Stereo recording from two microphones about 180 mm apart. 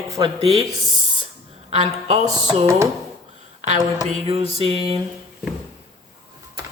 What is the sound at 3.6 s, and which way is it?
Speech, 40° right (ahead or behind).